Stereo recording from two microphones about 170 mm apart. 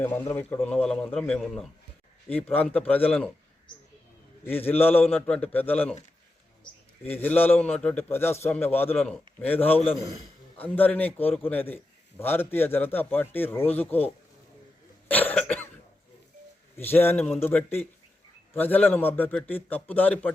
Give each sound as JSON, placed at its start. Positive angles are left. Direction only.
{"t": 0.0, "sound": "a man's voice", "side_deg": 10}
{"t": 4.4, "sound": "a man's voice", "side_deg": 10}
{"t": 7.0, "sound": "a man's voice", "side_deg": 10}
{"t": 9.7, "sound": "a man's voice", "side_deg": 35}
{"t": 10.6, "sound": "a man's voice", "side_deg": 10}
{"t": 15.0, "sound": "cough", "side_deg": 10}
{"t": 16.7, "sound": "a man's voice", "side_deg": 10}